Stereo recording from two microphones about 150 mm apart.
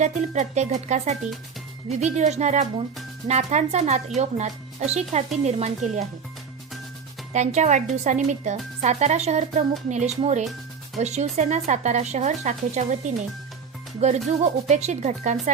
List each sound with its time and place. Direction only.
0.0 s speech: 55° right (ahead or behind)
7.3 s speech: 50° right (ahead or behind)
14.3 s speech: 55° right (ahead or behind)